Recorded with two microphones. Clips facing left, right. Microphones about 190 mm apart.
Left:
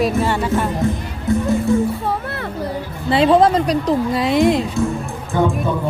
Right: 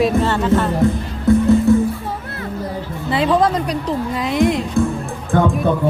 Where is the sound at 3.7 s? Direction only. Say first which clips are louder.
Left 4 dB; 35° left (ahead or behind).